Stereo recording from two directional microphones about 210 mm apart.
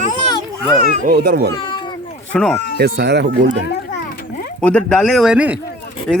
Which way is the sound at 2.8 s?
50° right (ahead or behind).